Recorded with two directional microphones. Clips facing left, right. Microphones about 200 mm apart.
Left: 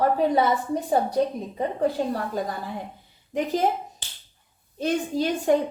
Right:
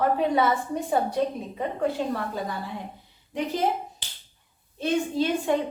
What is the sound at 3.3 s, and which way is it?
Speech, 45° left (ahead or behind).